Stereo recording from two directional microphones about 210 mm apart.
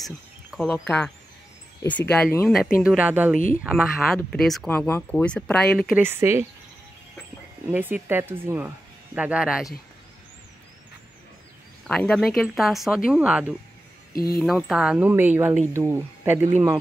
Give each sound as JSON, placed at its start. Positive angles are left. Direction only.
{"t": 0.0, "sound": "speech", "side_deg": 0}
{"t": 5.9, "sound": "speech", "side_deg": -10}
{"t": 7.6, "sound": "speech", "side_deg": -10}
{"t": 11.9, "sound": "speech", "side_deg": 5}
{"t": 14.1, "sound": "speech", "side_deg": 45}
{"t": 14.4, "sound": "speech", "side_deg": 0}